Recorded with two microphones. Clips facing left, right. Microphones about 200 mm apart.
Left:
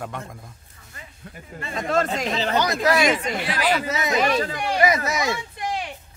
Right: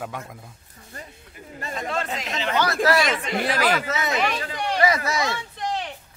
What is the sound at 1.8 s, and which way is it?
Speech, 45° left (ahead or behind).